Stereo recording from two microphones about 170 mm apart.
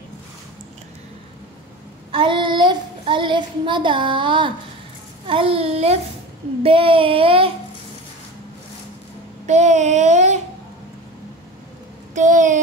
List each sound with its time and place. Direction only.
2.1 s child singing: 30° right (ahead or behind)
9.5 s child singing: 40° right (ahead or behind)
12.1 s a sound: 45° right (ahead or behind)